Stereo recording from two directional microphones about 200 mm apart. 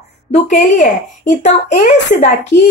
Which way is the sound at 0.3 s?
35° left (ahead or behind).